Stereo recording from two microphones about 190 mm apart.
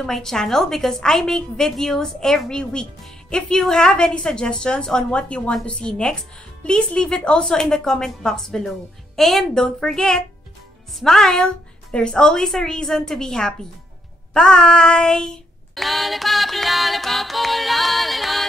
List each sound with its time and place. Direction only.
0.0 s a woman's voice: centre (ahead or behind)